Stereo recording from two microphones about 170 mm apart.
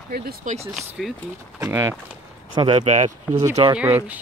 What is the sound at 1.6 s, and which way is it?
Speech, 15° right (ahead or behind).